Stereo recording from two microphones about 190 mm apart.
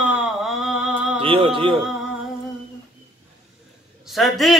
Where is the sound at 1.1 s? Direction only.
25° right (ahead or behind).